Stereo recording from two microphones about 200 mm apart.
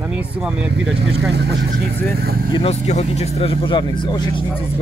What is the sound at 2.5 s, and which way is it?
Speech, 30° left (ahead or behind).